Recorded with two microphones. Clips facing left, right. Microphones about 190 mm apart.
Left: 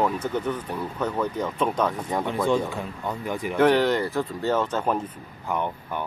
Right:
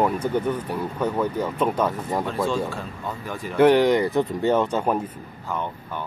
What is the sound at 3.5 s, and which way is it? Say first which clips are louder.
Speech: right 4 dB; 10° right (ahead or behind).